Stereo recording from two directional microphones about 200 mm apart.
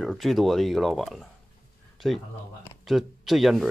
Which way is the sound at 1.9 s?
Centre (ahead or behind).